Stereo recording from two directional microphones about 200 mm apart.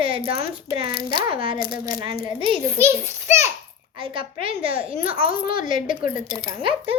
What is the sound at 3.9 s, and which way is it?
A child's voice, 25° right (ahead or behind).